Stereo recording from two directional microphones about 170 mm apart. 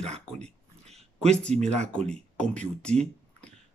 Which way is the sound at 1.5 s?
40° right (ahead or behind).